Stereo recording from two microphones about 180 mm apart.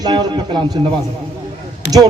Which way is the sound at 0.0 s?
25° right (ahead or behind).